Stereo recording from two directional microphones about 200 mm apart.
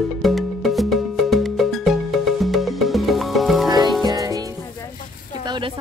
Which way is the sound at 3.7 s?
20° right (ahead or behind).